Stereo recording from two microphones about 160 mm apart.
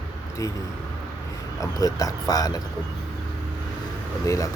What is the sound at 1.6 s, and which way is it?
Speech, 20° left (ahead or behind).